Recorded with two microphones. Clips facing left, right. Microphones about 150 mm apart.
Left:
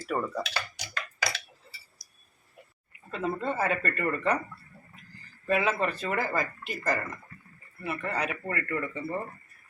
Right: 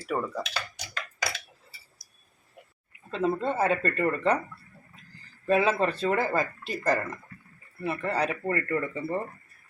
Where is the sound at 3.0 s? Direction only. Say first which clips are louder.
Right 4 dB; 25° right (ahead or behind).